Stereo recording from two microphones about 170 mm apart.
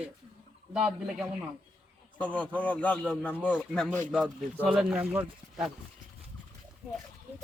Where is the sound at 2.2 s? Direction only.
10° left (ahead or behind).